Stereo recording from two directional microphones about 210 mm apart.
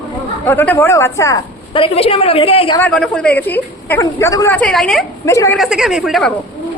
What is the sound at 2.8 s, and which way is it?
Speech, 5° left (ahead or behind).